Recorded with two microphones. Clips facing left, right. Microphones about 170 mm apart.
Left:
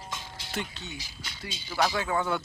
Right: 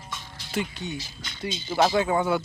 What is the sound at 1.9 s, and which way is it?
Speech, 20° right (ahead or behind).